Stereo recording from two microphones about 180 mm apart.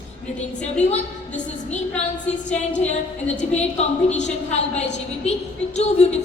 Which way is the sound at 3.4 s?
40° left (ahead or behind).